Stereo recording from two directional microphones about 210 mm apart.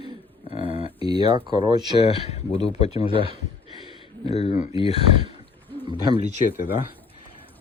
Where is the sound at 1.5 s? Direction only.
20° right (ahead or behind).